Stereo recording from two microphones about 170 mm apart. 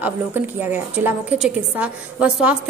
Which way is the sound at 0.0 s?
10° right (ahead or behind).